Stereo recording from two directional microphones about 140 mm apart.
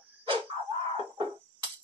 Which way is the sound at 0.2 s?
40° right (ahead or behind).